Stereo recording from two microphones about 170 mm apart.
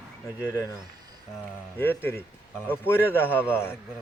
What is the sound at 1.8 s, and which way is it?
Speech, 15° left (ahead or behind).